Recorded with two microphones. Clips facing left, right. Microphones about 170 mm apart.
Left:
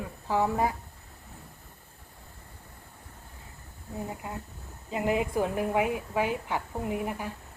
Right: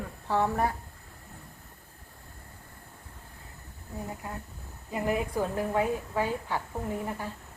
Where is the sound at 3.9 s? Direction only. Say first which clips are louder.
Left 2 dB; 20° left (ahead or behind).